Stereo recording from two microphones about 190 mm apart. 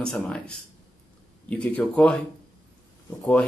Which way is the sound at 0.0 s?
5° left (ahead or behind).